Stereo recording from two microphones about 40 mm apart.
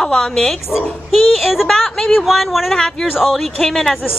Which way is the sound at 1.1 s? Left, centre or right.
Centre.